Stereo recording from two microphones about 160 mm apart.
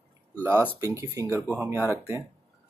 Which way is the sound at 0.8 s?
15° right (ahead or behind).